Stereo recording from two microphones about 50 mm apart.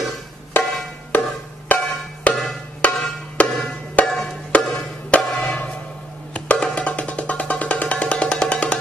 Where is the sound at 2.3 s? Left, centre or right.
Left.